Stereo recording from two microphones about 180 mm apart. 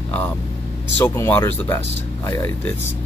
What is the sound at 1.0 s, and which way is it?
Speech, 10° left (ahead or behind).